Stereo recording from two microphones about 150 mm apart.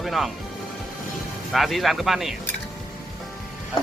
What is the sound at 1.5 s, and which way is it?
Speech, centre (ahead or behind).